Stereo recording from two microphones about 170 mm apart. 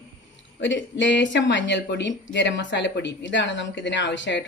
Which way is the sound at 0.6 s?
90° left.